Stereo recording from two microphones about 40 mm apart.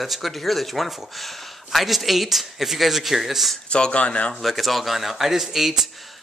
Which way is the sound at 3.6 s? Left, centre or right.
Left.